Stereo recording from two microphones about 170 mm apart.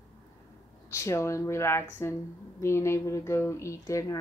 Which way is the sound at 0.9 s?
15° left (ahead or behind).